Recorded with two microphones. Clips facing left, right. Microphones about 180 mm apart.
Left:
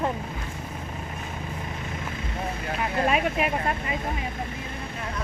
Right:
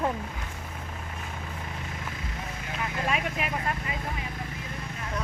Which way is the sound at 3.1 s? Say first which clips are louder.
Left 5 dB; 25° left (ahead or behind).